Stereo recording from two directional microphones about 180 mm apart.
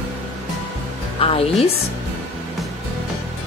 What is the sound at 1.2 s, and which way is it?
Speech, 30° left (ahead or behind).